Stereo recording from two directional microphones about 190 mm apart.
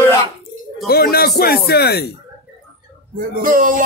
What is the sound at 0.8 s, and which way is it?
Speech, 55° left (ahead or behind).